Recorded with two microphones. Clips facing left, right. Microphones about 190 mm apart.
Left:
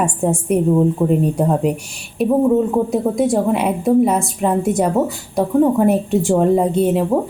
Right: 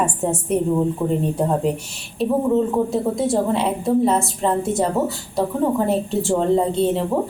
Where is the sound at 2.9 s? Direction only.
15° left (ahead or behind).